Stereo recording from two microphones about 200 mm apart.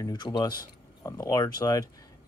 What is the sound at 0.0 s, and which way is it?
Speech, 20° left (ahead or behind).